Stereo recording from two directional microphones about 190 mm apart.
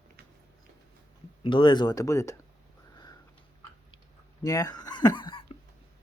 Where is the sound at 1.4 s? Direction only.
25° left (ahead or behind).